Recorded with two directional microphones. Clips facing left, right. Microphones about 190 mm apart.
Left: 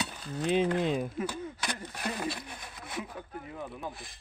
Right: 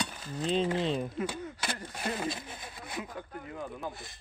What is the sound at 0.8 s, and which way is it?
Speech, 5° left (ahead or behind).